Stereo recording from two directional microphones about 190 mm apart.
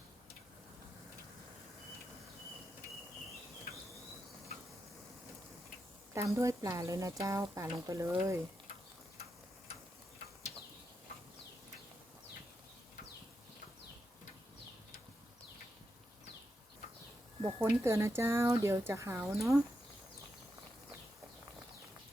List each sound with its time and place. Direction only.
6.1 s speech: 15° right (ahead or behind)
17.6 s speech: 15° right (ahead or behind)